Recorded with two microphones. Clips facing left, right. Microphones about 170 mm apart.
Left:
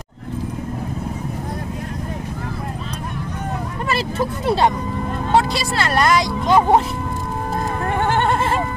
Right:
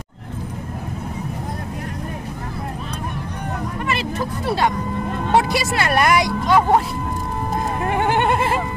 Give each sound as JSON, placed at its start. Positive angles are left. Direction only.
{"t": 3.9, "sound": "vehicle", "side_deg": 25}
{"t": 5.5, "sound": "a woman's voice", "side_deg": -15}
{"t": 6.2, "sound": "speech", "side_deg": 20}
{"t": 7.8, "sound": "goat", "side_deg": -15}